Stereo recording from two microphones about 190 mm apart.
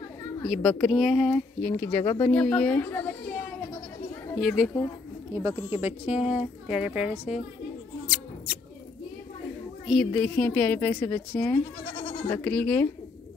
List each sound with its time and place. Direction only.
0.5 s speech: 5° left (ahead or behind)
5.3 s speech: 15° right (ahead or behind)
9.8 s a woman's voice: 5° left (ahead or behind)
11.9 s goat: 35° left (ahead or behind)
12.3 s a woman's voice: 5° left (ahead or behind)